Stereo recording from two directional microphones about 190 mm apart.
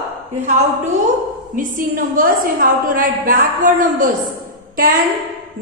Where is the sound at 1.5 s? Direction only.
45° right (ahead or behind).